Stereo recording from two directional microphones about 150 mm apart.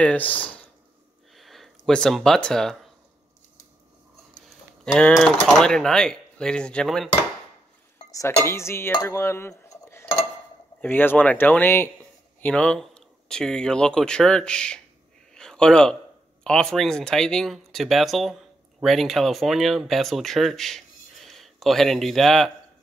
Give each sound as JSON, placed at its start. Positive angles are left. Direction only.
{"t": 0.0, "sound": "dishes", "side_deg": 10}
{"t": 1.3, "sound": "a sound", "side_deg": 0}
{"t": 4.9, "sound": "speech", "side_deg": 5}
{"t": 8.4, "sound": "dishes", "side_deg": 15}
{"t": 9.7, "sound": "cutlery", "side_deg": 15}
{"t": 10.8, "sound": "dishes", "side_deg": 15}
{"t": 12.4, "sound": "speech", "side_deg": 10}
{"t": 15.3, "sound": "a sound", "side_deg": 5}
{"t": 16.4, "sound": "speech", "side_deg": 5}